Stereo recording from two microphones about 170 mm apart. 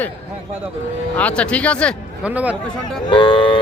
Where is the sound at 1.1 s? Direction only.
5° left (ahead or behind).